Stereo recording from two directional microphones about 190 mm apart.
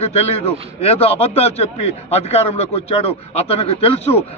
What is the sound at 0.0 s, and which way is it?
A man's voice, 35° left (ahead or behind).